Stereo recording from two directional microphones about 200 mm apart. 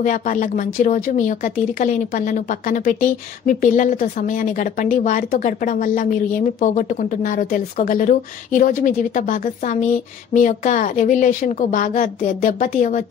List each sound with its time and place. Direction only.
0.0 s speech: 40° left (ahead or behind)